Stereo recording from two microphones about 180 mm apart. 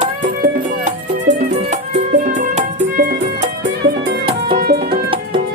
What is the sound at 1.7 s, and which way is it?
Music, 40° right (ahead or behind).